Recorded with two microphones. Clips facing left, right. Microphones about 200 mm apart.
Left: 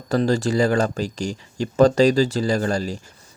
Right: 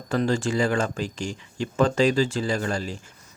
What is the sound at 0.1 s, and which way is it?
A man's voice, 40° left (ahead or behind).